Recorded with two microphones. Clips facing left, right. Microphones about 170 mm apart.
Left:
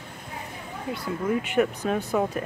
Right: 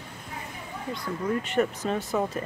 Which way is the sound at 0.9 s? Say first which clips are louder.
Left 2 dB; 5° left (ahead or behind).